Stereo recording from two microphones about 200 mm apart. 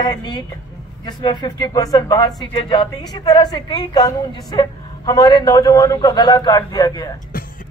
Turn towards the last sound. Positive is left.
turn(degrees=20)  # may be behind; listen again after turning